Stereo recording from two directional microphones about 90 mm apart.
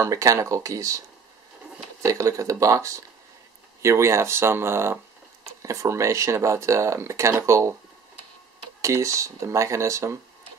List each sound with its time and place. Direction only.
0.0 s speech: 35° right (ahead or behind)
2.0 s speech: 35° right (ahead or behind)
8.8 s speech: 35° right (ahead or behind)